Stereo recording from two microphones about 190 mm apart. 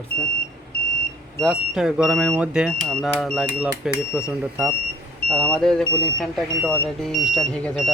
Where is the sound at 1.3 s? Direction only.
Centre (ahead or behind).